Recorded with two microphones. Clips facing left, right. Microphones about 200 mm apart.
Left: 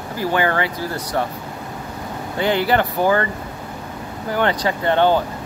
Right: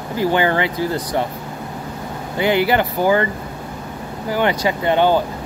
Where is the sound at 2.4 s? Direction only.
15° right (ahead or behind).